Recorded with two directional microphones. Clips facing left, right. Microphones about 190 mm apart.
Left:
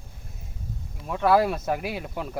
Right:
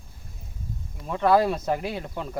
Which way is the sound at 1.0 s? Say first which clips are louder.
Even; 5° left (ahead or behind).